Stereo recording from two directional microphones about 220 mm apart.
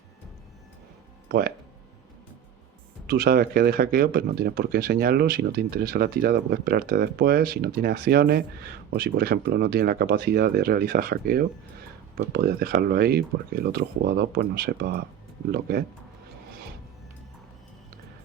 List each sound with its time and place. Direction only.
1.3 s speech: 45° right (ahead or behind)
3.1 s speech: 45° right (ahead or behind)